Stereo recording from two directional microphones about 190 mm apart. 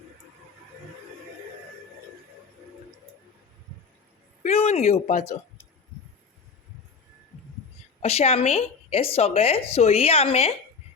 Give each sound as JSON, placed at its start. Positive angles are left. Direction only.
{"t": 4.4, "sound": "speech", "side_deg": 35}
{"t": 8.0, "sound": "a woman's voice", "side_deg": 35}